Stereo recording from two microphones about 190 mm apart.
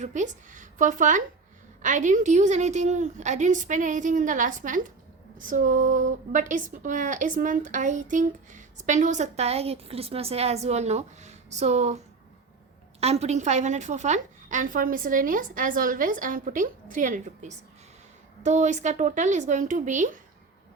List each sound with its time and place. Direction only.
0.0 s a woman's voice: 40° right (ahead or behind)
13.0 s a woman's voice: 35° right (ahead or behind)